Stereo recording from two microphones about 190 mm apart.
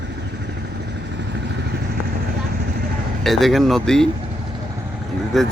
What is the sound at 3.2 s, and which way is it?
Speech, centre (ahead or behind).